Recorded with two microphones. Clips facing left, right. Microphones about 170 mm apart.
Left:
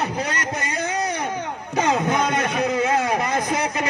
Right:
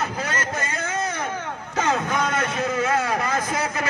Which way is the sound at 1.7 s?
15° left (ahead or behind).